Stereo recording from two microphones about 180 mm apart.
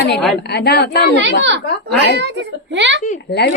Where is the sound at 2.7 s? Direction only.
80° right.